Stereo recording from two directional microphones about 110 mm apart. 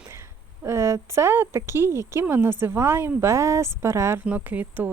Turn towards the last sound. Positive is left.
turn(degrees=-15)  # may be behind; listen again after turning